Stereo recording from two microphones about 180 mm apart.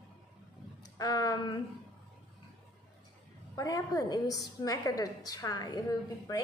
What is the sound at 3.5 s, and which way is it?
A woman's voice, 20° left (ahead or behind).